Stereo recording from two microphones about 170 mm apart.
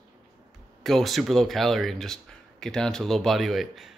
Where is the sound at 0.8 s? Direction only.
Centre (ahead or behind).